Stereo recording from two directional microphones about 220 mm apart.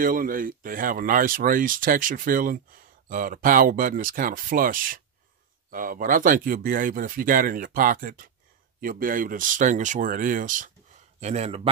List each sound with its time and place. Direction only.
0.0 s speech: 40° right (ahead or behind)